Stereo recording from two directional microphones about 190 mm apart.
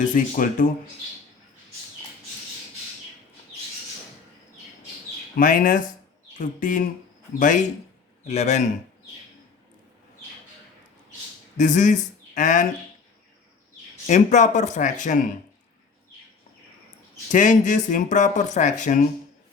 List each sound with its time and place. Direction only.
0.0 s speech: 45° left (ahead or behind)
5.4 s speech: 45° left (ahead or behind)
11.5 s speech: 40° left (ahead or behind)
14.1 s speech: 40° left (ahead or behind)
17.3 s speech: 40° left (ahead or behind)